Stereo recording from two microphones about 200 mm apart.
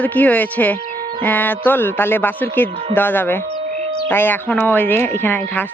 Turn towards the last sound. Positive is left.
turn(degrees=10)  # may be behind; listen again after turning